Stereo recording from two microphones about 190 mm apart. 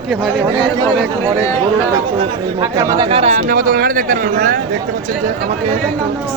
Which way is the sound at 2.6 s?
20° right (ahead or behind).